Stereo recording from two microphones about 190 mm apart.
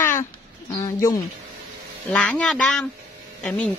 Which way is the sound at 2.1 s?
5° left (ahead or behind).